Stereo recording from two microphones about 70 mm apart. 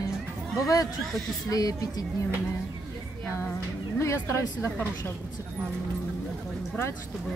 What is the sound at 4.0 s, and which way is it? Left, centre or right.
Speech, left.